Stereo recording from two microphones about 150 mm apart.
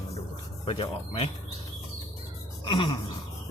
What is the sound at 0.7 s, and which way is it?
Speech, 35° left (ahead or behind).